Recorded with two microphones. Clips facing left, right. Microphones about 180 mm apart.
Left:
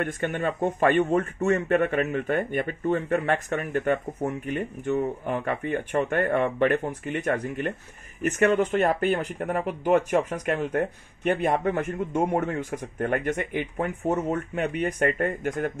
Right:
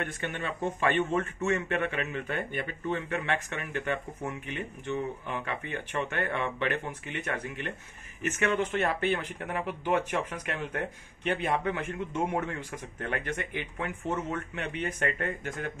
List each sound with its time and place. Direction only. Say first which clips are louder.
0.0 s speech: left 8 dB; 45° left (ahead or behind)